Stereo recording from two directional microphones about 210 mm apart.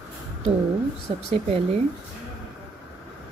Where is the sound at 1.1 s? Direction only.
25° right (ahead or behind).